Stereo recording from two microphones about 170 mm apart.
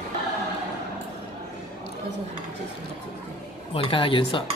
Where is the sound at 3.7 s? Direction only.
30° left (ahead or behind).